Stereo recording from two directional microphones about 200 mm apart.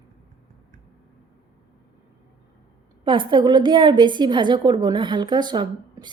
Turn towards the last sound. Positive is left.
turn(degrees=-20)  # may be behind; listen again after turning